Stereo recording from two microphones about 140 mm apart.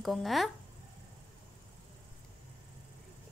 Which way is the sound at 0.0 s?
Centre (ahead or behind).